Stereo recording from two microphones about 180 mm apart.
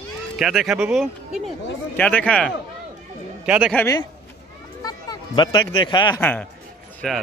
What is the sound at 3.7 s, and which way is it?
Speech, 20° left (ahead or behind).